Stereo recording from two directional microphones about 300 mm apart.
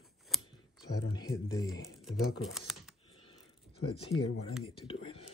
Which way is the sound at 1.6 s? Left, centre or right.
Centre.